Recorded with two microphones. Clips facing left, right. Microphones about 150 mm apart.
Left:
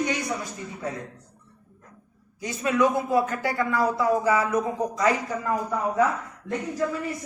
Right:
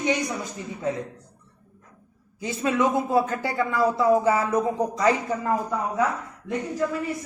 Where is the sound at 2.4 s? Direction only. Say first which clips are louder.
Even; 25° right (ahead or behind).